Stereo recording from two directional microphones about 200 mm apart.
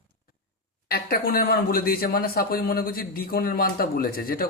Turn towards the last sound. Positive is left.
turn(degrees=45)  # may be behind; listen again after turning